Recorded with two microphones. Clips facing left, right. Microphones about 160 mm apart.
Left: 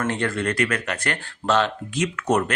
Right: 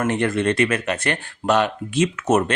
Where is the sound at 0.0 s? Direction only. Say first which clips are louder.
Right 4 dB; 20° right (ahead or behind).